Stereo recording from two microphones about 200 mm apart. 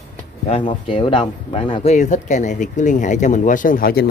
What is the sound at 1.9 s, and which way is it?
Speech, 35° left (ahead or behind).